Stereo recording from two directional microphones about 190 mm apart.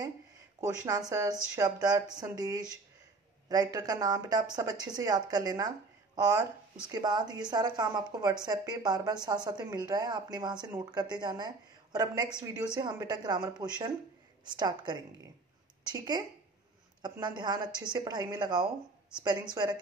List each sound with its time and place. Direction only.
0.6 s a woman's voice: 20° right (ahead or behind)